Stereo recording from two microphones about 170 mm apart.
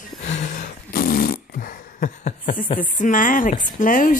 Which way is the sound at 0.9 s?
60° left (ahead or behind).